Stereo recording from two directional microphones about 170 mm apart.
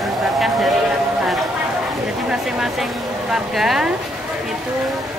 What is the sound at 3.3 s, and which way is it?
Speech, centre (ahead or behind).